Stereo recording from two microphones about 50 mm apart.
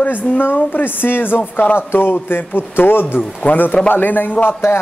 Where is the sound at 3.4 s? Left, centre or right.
Left.